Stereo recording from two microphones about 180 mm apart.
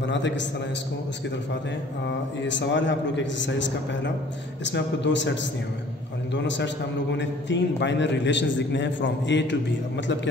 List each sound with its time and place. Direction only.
0.0 s a man's voice: 80° left
2.4 s a man's voice: 90° left